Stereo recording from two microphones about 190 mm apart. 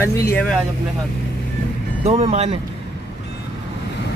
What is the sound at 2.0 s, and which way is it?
Speech, 30° right (ahead or behind).